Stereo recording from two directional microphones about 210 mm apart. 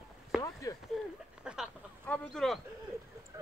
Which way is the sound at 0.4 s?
15° left (ahead or behind).